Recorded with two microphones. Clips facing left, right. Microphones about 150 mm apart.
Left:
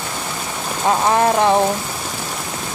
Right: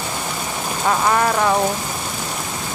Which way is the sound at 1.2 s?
30° left (ahead or behind).